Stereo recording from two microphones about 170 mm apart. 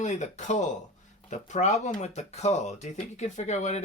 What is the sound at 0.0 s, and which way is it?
Speech, 45° left (ahead or behind).